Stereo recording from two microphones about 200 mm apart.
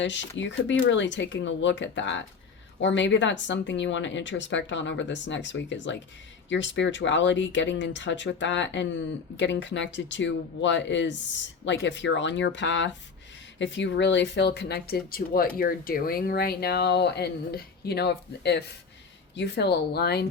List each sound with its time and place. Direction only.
0.0 s speech: 65° left (ahead or behind)